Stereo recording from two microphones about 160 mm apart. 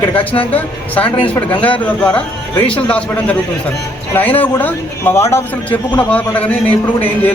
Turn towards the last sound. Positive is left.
turn(degrees=10)  # may be behind; listen again after turning